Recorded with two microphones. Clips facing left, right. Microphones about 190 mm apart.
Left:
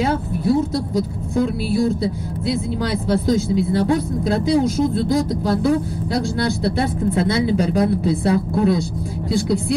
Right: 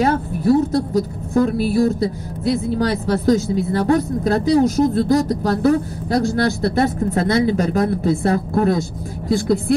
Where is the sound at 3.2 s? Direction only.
45° right (ahead or behind).